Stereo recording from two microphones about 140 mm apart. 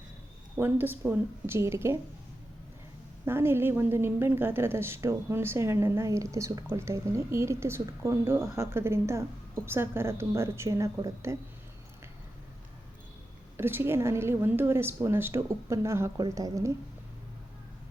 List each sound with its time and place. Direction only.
0.5 s a woman's voice: 15° right (ahead or behind)
3.2 s a woman's voice: 15° right (ahead or behind)
13.6 s a woman's voice: 15° right (ahead or behind)